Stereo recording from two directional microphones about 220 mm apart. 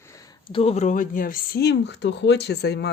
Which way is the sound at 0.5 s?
30° left (ahead or behind).